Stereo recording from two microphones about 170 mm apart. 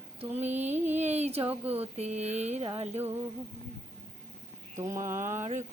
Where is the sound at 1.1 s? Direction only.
40° right (ahead or behind).